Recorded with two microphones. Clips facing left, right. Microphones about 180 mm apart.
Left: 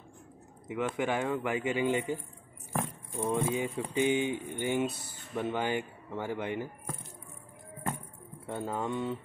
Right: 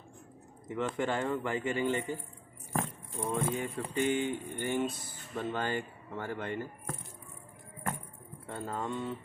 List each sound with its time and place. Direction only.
0.7 s speech: 10° left (ahead or behind)
3.3 s speech: 15° left (ahead or behind)
8.5 s speech: 15° left (ahead or behind)